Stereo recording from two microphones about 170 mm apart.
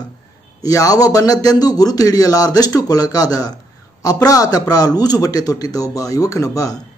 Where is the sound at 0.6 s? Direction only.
20° left (ahead or behind).